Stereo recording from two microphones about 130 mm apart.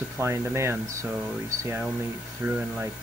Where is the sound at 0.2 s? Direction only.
20° right (ahead or behind).